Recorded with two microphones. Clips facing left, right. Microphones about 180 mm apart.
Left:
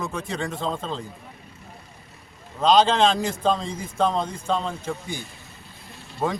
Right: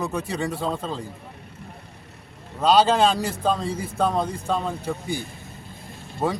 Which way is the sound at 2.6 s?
10° right (ahead or behind).